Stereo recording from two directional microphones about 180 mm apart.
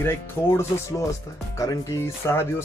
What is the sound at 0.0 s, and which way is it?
Speech, 15° left (ahead or behind).